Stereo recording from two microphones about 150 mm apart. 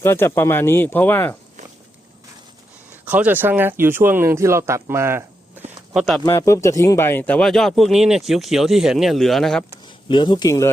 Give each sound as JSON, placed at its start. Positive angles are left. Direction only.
{"t": 0.0, "sound": "speech", "side_deg": 15}
{"t": 2.9, "sound": "speech", "side_deg": -10}
{"t": 5.9, "sound": "speech", "side_deg": 0}
{"t": 6.2, "sound": "speech", "side_deg": 20}
{"t": 9.8, "sound": "speech", "side_deg": 30}